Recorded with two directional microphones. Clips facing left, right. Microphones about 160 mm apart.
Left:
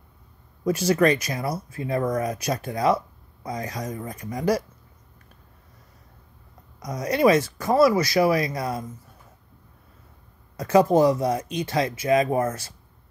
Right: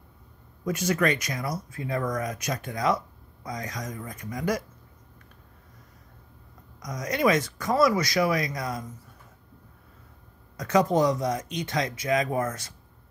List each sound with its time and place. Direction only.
0.7 s speech: 30° left (ahead or behind)
6.8 s speech: 30° left (ahead or behind)
10.6 s speech: 30° left (ahead or behind)